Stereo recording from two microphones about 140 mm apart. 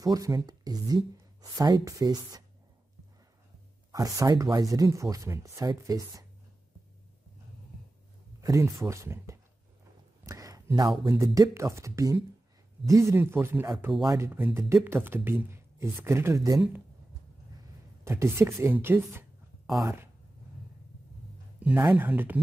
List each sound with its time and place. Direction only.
0.0 s speech: 25° right (ahead or behind)
3.9 s speech: 25° right (ahead or behind)
8.4 s speech: 20° right (ahead or behind)
10.2 s a sound: 25° right (ahead or behind)
11.1 s speech: 25° right (ahead or behind)
18.0 s speech: 20° right (ahead or behind)
21.5 s a sound: 10° right (ahead or behind)
21.9 s speech: 15° right (ahead or behind)